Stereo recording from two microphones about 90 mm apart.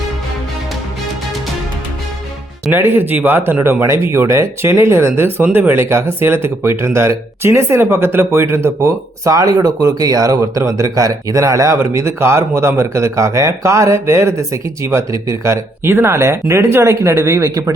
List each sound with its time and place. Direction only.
2.7 s speech: 25° right (ahead or behind)
15.8 s speech: 25° right (ahead or behind)